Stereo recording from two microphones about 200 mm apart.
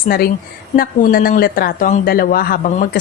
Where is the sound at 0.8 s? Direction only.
45° left (ahead or behind).